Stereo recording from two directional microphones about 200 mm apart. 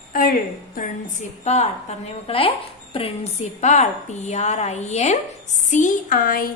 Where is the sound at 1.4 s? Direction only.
35° left (ahead or behind).